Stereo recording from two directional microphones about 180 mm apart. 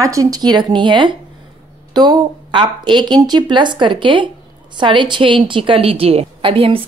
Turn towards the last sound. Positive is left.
turn(degrees=-30)  # may be behind; listen again after turning